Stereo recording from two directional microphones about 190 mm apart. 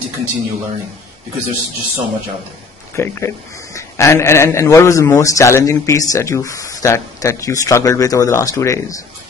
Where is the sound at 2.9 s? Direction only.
15° left (ahead or behind).